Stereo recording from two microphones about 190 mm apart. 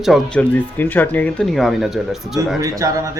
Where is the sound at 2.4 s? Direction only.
20° right (ahead or behind).